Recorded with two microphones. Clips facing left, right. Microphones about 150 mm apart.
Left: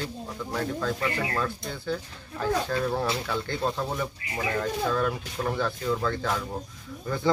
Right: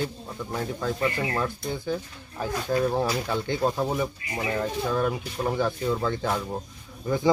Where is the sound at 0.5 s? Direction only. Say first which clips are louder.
Even; 20° right (ahead or behind).